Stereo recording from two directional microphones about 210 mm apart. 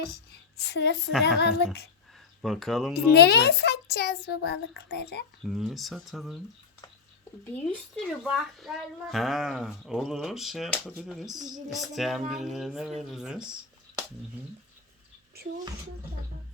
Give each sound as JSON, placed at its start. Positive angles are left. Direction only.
{"t": 0.5, "sound": "a child's voice", "side_deg": 50}
{"t": 2.4, "sound": "speech", "side_deg": 0}
{"t": 3.1, "sound": "a child's voice", "side_deg": 50}
{"t": 5.5, "sound": "speech", "side_deg": 0}
{"t": 7.7, "sound": "speech", "side_deg": 0}